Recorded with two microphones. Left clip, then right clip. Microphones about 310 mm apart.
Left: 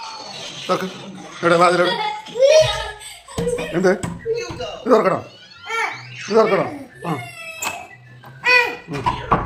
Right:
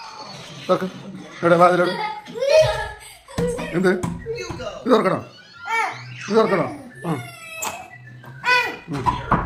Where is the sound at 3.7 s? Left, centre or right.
Centre.